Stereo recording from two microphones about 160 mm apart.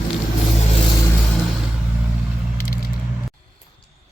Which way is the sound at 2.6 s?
65° left (ahead or behind).